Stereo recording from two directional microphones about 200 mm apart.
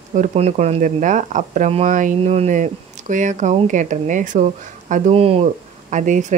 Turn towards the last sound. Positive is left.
turn(degrees=-40)  # may be behind; listen again after turning